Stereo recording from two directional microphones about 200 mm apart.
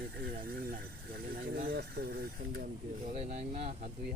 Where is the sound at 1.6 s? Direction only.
50° right (ahead or behind).